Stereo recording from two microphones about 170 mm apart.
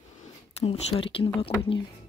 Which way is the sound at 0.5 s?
35° left (ahead or behind).